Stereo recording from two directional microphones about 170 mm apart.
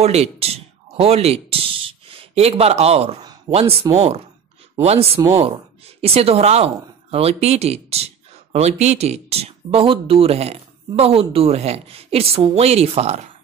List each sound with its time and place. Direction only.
0.0 s speech: 40° right (ahead or behind)